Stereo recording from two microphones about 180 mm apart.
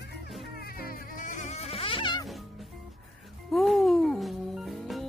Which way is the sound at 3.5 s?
Centre (ahead or behind).